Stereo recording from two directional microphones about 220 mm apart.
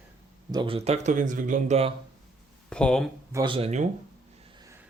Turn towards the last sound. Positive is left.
turn(degrees=-15)  # may be behind; listen again after turning